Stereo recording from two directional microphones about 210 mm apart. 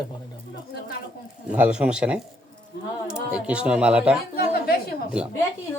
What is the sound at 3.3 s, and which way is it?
Speech, 5° right (ahead or behind).